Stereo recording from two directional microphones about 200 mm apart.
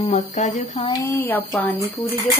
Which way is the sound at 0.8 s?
15° left (ahead or behind).